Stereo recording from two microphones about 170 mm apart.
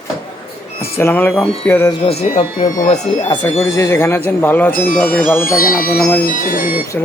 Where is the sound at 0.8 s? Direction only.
15° left (ahead or behind).